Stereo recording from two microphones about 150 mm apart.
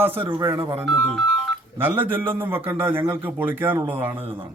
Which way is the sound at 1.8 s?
15° right (ahead or behind).